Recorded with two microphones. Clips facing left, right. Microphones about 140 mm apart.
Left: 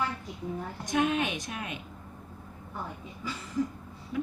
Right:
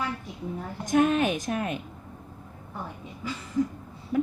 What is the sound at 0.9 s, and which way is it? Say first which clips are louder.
Speech: right 6 dB; 45° right (ahead or behind).